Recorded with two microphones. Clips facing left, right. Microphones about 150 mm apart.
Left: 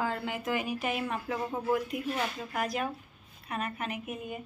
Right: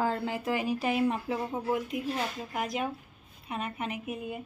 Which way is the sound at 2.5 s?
20° right (ahead or behind).